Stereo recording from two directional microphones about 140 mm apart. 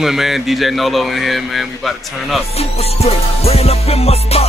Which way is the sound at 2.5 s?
45° left (ahead or behind).